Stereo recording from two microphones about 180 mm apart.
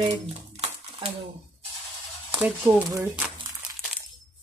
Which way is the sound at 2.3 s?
5° right (ahead or behind).